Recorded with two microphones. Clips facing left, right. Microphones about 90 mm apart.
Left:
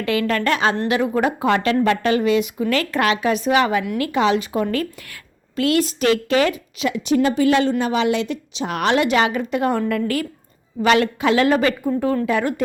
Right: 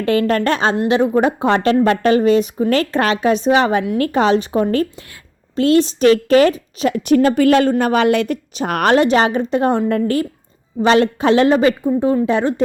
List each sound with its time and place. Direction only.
0.0 s a woman's voice: 35° right (ahead or behind)
6.2 s a woman's voice: 40° right (ahead or behind)